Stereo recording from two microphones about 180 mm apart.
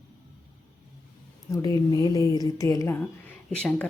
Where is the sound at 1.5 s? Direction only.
20° left (ahead or behind).